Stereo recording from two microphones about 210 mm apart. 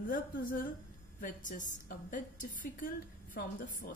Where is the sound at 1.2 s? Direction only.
40° left (ahead or behind).